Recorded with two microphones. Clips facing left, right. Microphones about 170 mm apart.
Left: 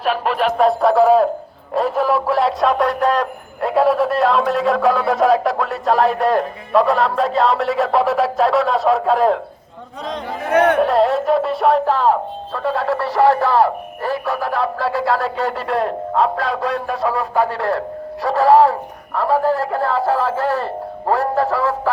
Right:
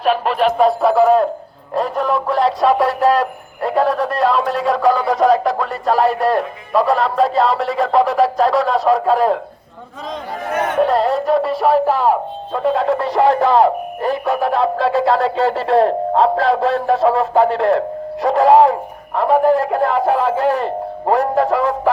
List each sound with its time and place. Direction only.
0.5 s speech: centre (ahead or behind)
10.5 s speech: 65° left (ahead or behind)
10.8 s speech: centre (ahead or behind); by 21.8 s 20° right (ahead or behind)